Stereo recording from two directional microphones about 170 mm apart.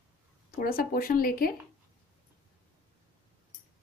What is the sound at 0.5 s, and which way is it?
A woman's voice, 60° left (ahead or behind).